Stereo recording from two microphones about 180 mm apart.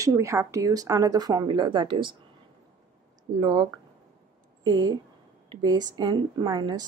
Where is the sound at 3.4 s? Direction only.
25° right (ahead or behind).